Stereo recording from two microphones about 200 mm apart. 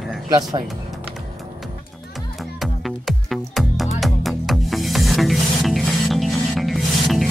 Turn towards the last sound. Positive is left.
turn(degrees=0)  # may be behind; listen again after turning